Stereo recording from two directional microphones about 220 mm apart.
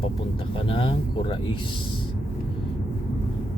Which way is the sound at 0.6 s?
25° left (ahead or behind).